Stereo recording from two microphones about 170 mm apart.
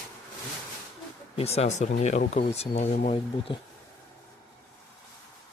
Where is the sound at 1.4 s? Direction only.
40° left (ahead or behind).